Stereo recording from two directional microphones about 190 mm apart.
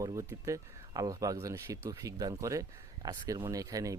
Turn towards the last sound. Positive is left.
turn(degrees=-20)  # may be behind; listen again after turning